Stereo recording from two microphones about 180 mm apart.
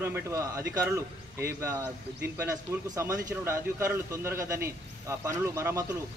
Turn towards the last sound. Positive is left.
turn(degrees=-15)  # may be behind; listen again after turning